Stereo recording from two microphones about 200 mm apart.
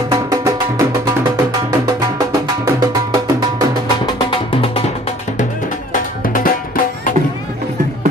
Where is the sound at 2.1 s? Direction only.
20° right (ahead or behind).